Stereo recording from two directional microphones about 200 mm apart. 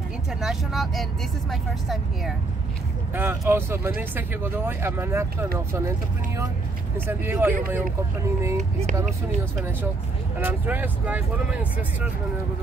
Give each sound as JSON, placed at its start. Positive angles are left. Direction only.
{"t": 0.3, "sound": "speech", "side_deg": 0}
{"t": 3.2, "sound": "speech", "side_deg": -10}
{"t": 8.5, "sound": "speech", "side_deg": -35}
{"t": 10.3, "sound": "speech", "side_deg": -10}